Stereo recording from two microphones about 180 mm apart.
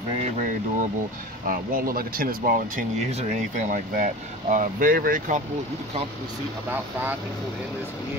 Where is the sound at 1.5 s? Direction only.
50° right (ahead or behind).